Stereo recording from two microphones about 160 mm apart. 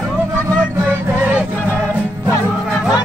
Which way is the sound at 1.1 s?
10° right (ahead or behind).